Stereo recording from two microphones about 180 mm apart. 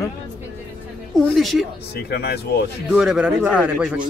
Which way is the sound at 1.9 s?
60° left (ahead or behind).